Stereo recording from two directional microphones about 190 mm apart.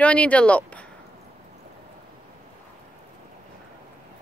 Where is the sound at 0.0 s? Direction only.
5° left (ahead or behind).